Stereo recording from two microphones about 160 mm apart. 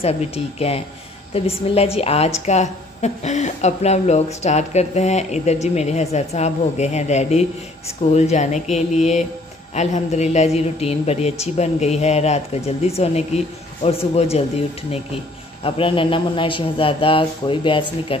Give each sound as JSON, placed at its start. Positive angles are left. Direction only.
{"t": 0.6, "sound": "a woman's voice", "side_deg": 40}
{"t": 15.6, "sound": "speech", "side_deg": 35}